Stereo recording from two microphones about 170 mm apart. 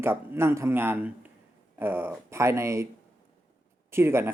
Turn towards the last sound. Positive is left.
turn(degrees=-15)  # may be behind; listen again after turning